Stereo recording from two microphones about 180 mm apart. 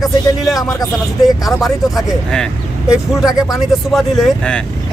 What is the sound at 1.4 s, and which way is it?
Speech, centre (ahead or behind).